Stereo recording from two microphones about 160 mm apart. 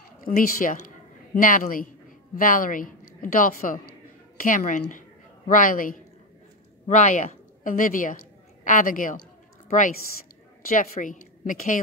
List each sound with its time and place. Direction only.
0.2 s a man's voice: 60° left (ahead or behind)
10.7 s a man's voice: 55° left (ahead or behind)